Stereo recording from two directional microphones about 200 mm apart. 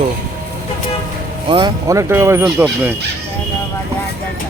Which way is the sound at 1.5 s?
20° right (ahead or behind).